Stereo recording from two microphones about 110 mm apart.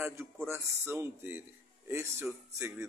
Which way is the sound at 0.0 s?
25° right (ahead or behind).